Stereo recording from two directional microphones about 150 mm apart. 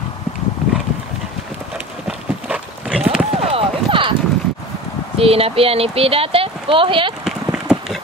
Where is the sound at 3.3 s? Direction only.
40° right (ahead or behind).